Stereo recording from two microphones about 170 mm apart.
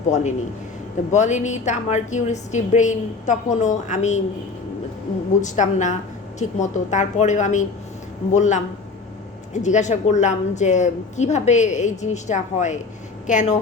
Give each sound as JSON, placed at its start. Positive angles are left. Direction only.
{"t": 0.1, "sound": "a woman's voice", "side_deg": 45}
{"t": 5.4, "sound": "a woman's voice", "side_deg": 45}